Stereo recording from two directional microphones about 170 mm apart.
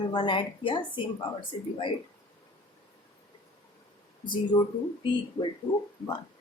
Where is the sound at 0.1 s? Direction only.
30° left (ahead or behind).